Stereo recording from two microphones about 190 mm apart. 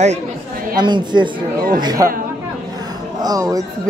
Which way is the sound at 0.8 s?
25° right (ahead or behind).